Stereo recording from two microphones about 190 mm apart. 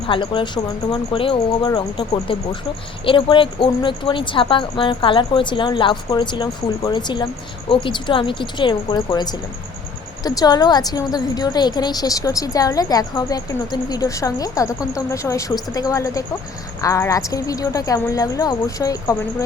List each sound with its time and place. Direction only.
0.1 s a woman's voice: 25° left (ahead or behind)